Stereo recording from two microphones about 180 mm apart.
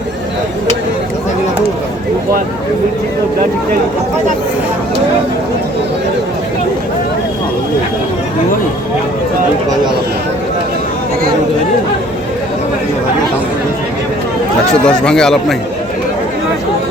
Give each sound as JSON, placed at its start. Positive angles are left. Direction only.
{"t": 14.7, "sound": "speech", "side_deg": 5}